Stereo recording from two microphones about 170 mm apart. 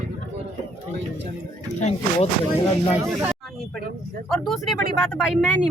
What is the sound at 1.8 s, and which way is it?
Speech, 40° left (ahead or behind).